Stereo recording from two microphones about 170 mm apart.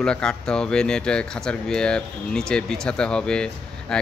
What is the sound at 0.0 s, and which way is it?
Speech, 5° left (ahead or behind).